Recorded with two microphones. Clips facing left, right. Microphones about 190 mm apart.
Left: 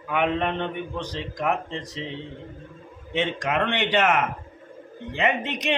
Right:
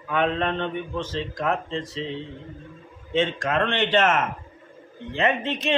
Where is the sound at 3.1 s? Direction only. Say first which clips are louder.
Right 2 dB; 15° left (ahead or behind).